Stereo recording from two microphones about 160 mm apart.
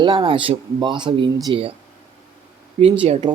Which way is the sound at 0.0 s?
30° right (ahead or behind).